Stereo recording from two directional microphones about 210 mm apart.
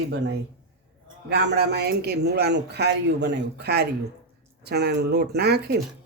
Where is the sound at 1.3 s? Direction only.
50° right (ahead or behind).